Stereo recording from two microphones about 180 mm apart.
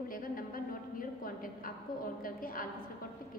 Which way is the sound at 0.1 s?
55° left (ahead or behind).